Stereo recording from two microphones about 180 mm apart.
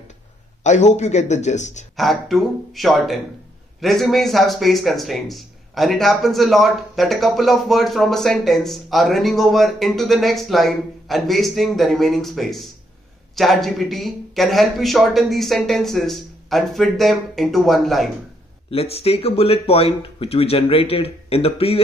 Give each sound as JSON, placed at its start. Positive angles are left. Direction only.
{"t": 0.7, "sound": "speech", "side_deg": 40}
{"t": 2.0, "sound": "speech", "side_deg": 0}
{"t": 18.7, "sound": "speech", "side_deg": 35}